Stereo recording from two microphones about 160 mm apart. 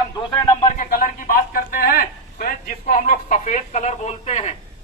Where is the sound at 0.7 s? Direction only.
55° left (ahead or behind).